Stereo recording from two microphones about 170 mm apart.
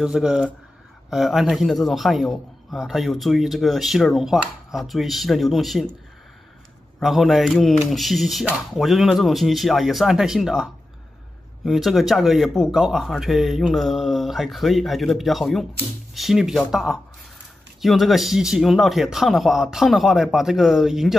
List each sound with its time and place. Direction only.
0.0 s a man's voice: 5° right (ahead or behind)
7.0 s a man's voice: centre (ahead or behind)